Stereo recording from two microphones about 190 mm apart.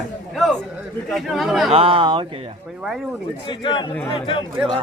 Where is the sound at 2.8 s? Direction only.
Centre (ahead or behind).